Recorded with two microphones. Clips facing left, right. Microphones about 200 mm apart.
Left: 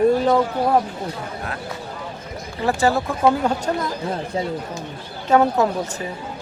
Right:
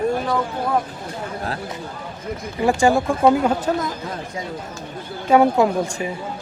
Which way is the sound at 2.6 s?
15° right (ahead or behind).